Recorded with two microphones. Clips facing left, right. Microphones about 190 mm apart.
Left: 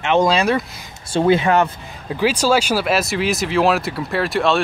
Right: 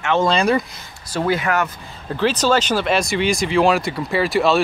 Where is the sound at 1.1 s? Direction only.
25° left (ahead or behind).